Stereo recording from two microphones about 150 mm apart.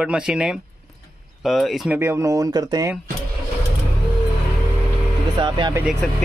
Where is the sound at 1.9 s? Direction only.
15° right (ahead or behind).